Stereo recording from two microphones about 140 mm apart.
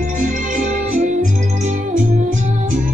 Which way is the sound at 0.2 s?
60° right (ahead or behind).